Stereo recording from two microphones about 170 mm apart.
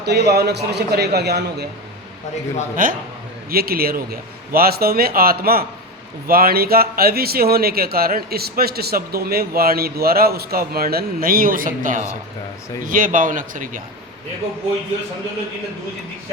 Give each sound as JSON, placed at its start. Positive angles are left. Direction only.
{"t": 0.0, "sound": "a man's voice", "side_deg": -70}
{"t": 2.8, "sound": "a man's voice", "side_deg": -55}